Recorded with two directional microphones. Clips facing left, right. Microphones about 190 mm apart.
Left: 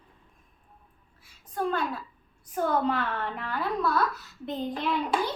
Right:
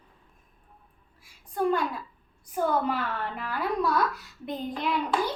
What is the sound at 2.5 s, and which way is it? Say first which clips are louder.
A woman's voice: even; 10° right (ahead or behind).